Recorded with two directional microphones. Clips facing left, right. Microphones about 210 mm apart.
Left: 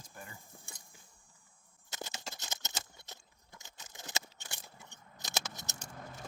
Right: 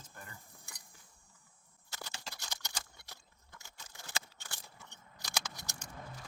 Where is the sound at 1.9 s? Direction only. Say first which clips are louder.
Left 4 dB; 20° left (ahead or behind).